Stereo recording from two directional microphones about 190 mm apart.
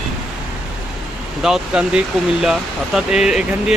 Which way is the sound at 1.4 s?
5° right (ahead or behind).